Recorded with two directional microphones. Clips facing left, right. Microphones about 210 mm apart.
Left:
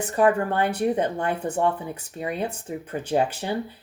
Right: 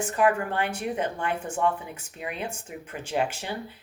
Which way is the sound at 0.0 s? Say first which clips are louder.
Left 3 dB; 35° left (ahead or behind).